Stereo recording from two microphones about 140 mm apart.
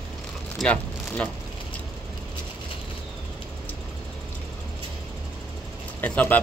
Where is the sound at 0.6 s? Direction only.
Centre (ahead or behind).